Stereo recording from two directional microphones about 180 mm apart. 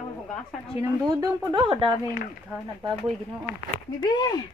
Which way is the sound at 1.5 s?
30° right (ahead or behind).